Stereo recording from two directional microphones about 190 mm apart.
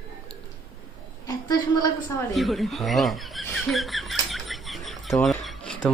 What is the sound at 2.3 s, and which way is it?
Speech, centre (ahead or behind).